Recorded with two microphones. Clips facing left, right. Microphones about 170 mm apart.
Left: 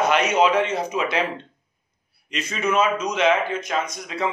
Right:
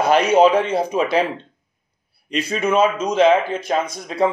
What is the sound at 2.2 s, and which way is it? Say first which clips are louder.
Speech: right 4 dB; 35° right (ahead or behind).